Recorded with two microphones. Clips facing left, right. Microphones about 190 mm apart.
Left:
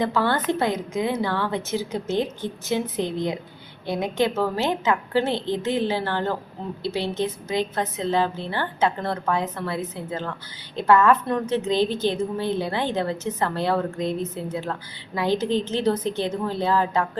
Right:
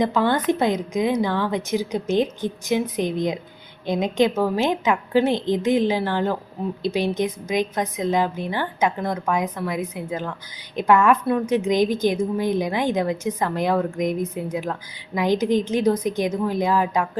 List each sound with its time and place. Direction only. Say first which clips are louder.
0.0 s a woman's voice: right 3 dB; 15° right (ahead or behind)